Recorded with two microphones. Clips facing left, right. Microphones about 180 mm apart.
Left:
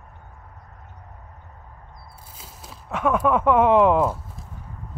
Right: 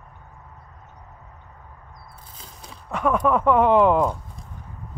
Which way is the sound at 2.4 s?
5° left (ahead or behind).